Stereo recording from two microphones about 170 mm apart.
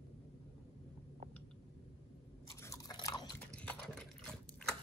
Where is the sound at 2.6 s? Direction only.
20° left (ahead or behind).